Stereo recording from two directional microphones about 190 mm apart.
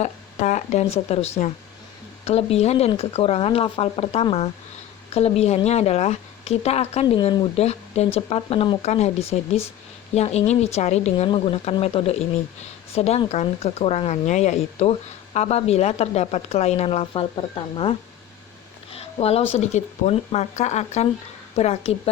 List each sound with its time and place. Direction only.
0.0 s speech: 40° left (ahead or behind)
18.9 s a sound: 30° left (ahead or behind)
19.5 s speech: 35° left (ahead or behind)